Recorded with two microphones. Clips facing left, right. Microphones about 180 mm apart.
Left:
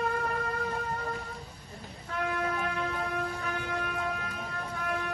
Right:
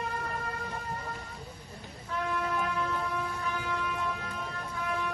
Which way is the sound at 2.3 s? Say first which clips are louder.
Right 2 dB; 55° left (ahead or behind).